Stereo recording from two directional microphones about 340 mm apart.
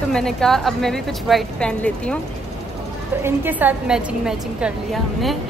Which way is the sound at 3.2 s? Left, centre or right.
Centre.